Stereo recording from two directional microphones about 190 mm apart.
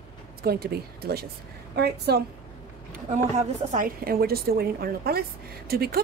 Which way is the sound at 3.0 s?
40° right (ahead or behind).